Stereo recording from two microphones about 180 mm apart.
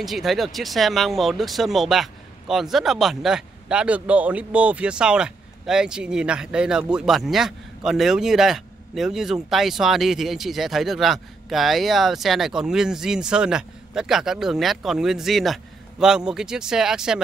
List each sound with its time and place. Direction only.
0.0 s speech: centre (ahead or behind)